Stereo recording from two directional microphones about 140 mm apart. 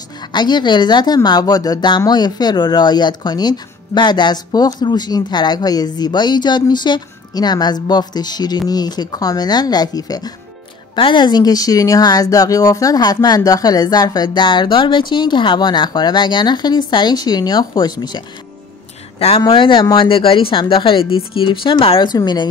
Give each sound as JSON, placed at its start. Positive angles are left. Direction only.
{"t": 0.3, "sound": "speech", "side_deg": 30}
{"t": 19.1, "sound": "speech", "side_deg": 45}